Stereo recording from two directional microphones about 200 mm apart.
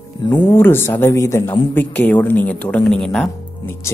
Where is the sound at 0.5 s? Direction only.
10° left (ahead or behind).